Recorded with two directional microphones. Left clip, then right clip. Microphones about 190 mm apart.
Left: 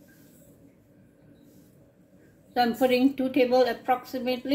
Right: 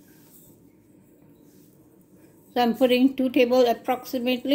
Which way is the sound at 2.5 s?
50° right (ahead or behind).